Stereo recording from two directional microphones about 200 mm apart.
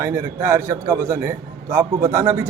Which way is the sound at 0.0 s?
15° right (ahead or behind).